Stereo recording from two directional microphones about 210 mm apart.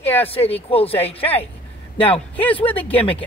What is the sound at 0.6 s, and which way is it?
Speech, 25° left (ahead or behind).